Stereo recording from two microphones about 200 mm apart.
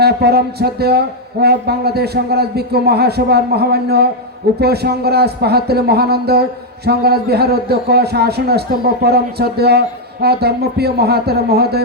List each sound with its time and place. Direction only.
0.0 s a man's voice: 55° right (ahead or behind)